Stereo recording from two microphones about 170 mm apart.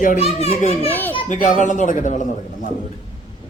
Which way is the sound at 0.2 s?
40° left (ahead or behind).